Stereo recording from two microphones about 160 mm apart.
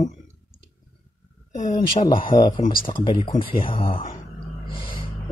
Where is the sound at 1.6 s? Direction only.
30° left (ahead or behind).